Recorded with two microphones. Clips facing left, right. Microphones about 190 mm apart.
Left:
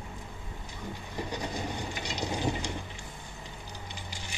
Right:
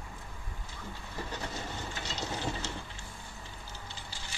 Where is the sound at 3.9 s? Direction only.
15° left (ahead or behind).